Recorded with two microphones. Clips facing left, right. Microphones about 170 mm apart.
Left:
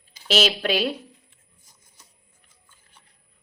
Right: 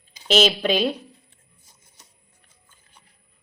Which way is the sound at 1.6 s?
25° right (ahead or behind).